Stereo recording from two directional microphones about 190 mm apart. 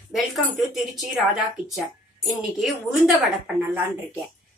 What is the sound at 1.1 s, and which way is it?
Speech, centre (ahead or behind).